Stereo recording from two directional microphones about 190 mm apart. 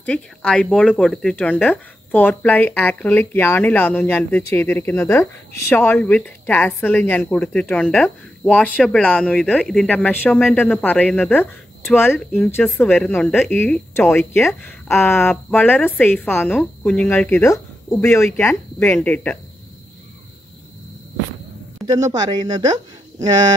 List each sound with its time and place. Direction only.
0.0 s speech: 5° left (ahead or behind)
21.8 s speech: 20° right (ahead or behind)